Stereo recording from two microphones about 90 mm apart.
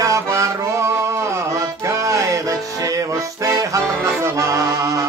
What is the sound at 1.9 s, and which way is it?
Music, 35° right (ahead or behind).